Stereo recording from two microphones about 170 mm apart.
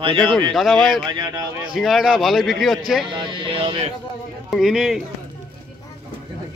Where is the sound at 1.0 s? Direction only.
25° right (ahead or behind).